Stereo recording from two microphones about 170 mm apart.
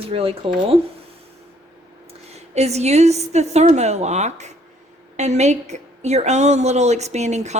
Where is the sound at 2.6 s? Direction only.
40° right (ahead or behind).